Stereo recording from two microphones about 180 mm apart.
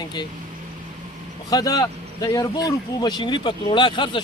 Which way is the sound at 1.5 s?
20° left (ahead or behind).